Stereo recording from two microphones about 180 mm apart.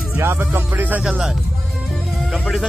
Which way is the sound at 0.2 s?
10° right (ahead or behind).